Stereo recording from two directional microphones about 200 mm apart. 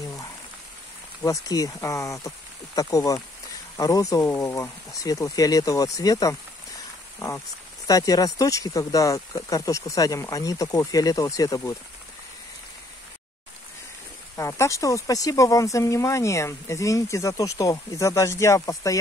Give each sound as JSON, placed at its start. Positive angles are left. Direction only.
{"t": 1.2, "sound": "speech", "side_deg": 15}
{"t": 14.3, "sound": "speech", "side_deg": 15}